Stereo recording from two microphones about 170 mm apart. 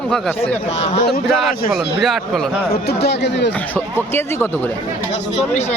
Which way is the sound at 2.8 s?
75° left (ahead or behind).